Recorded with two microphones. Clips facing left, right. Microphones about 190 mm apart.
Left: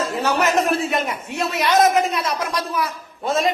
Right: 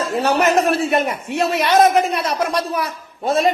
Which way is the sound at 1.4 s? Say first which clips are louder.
Right 2 dB; 35° right (ahead or behind).